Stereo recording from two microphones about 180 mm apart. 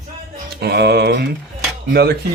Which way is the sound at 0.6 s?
65° right (ahead or behind).